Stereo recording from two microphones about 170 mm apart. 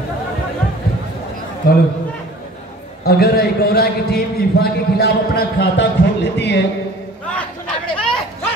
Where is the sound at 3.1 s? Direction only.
65° left (ahead or behind); by 6.6 s 90° left.